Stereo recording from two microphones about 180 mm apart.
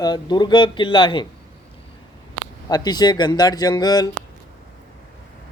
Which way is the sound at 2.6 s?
20° left (ahead or behind).